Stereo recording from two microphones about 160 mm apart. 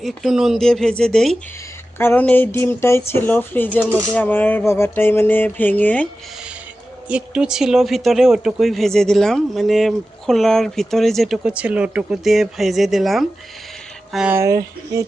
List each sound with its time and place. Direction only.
0.0 s speech: centre (ahead or behind)
2.0 s a sound: 10° left (ahead or behind)
7.1 s speech: 5° right (ahead or behind)
14.3 s speech: 20° right (ahead or behind)